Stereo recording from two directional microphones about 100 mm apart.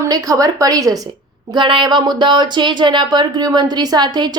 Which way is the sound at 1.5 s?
55° right (ahead or behind).